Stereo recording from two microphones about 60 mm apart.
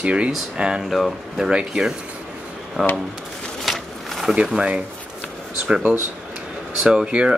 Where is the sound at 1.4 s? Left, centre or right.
Centre.